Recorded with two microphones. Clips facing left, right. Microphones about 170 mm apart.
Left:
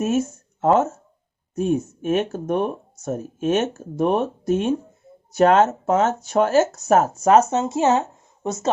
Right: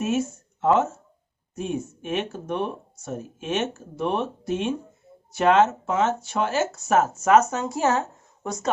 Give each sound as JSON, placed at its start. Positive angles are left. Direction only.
{"t": 0.0, "sound": "speech", "side_deg": 40}